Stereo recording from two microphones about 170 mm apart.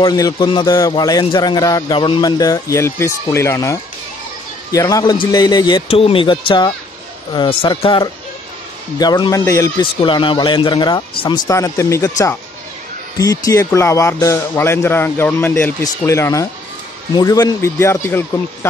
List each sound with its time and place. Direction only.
0.0 s speech: 25° left (ahead or behind)
9.9 s speech: 30° left (ahead or behind)
13.2 s speech: 20° left (ahead or behind)